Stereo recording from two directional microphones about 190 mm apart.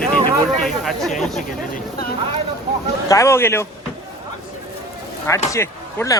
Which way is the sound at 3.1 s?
15° left (ahead or behind).